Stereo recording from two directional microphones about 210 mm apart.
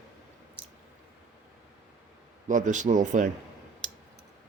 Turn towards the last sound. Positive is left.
turn(degrees=-35)  # may be behind; listen again after turning